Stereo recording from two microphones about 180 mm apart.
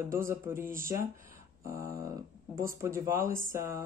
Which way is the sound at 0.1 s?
15° right (ahead or behind).